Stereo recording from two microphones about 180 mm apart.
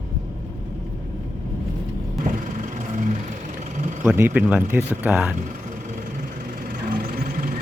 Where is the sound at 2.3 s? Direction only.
45° right (ahead or behind).